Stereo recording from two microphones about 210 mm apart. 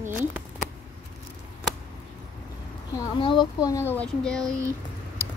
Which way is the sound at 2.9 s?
20° left (ahead or behind).